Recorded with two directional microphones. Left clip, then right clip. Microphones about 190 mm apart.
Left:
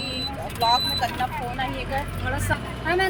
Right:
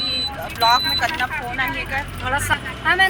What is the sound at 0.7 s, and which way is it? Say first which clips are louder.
Speech: right 5 dB; 20° left (ahead or behind).